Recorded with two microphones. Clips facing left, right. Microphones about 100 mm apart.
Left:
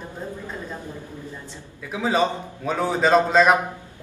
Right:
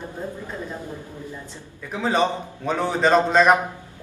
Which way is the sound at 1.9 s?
5° left (ahead or behind).